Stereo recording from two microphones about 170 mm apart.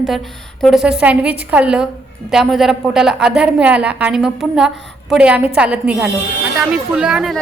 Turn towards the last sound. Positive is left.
turn(degrees=-5)  # may be behind; listen again after turning